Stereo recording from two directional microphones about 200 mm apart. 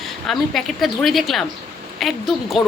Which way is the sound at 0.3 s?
Centre (ahead or behind).